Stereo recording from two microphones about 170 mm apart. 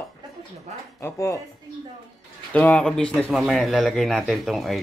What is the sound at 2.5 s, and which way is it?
Speech, 5° left (ahead or behind).